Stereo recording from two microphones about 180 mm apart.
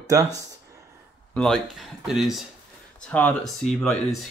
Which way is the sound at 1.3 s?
Centre (ahead or behind).